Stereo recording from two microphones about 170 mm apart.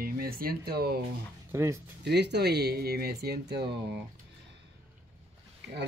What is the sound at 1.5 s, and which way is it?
Speech, 15° right (ahead or behind).